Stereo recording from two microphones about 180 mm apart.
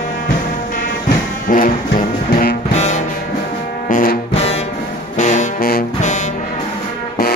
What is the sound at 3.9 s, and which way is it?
Brass instrument, 55° left (ahead or behind).